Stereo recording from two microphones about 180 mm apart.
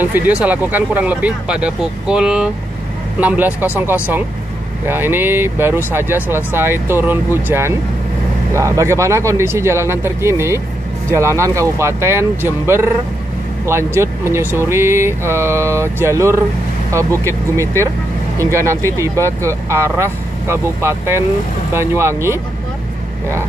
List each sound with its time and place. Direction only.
0.0 s speech: 10° right (ahead or behind)
18.4 s speech: 15° right (ahead or behind)